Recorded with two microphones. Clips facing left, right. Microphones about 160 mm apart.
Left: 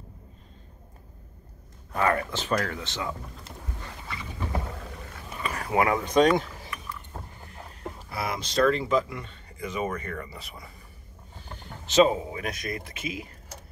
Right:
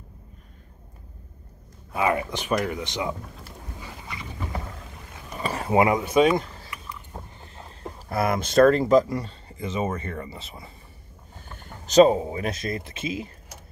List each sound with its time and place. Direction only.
1.9 s speech: 10° right (ahead or behind)
3.8 s dog: 15° right (ahead or behind)
5.4 s a sound: 25° right (ahead or behind)
6.0 s speech: 5° right (ahead or behind)
6.7 s vehicle: 20° right (ahead or behind)
8.1 s speech: 50° right (ahead or behind); by 10.7 s 25° right (ahead or behind)
11.5 s speech: 40° right (ahead or behind); by 13.3 s 25° right (ahead or behind)